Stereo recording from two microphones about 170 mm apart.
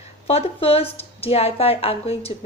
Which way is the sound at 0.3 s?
35° left (ahead or behind).